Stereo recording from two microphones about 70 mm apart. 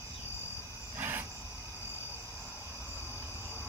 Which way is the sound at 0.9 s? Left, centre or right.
Right.